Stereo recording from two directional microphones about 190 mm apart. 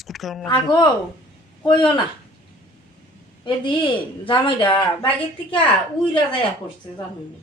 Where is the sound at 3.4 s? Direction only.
25° left (ahead or behind).